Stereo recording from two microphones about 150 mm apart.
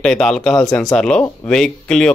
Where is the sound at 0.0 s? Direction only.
5° left (ahead or behind).